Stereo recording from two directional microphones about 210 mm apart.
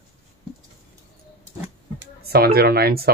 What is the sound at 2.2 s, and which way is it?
Speech, 45° right (ahead or behind).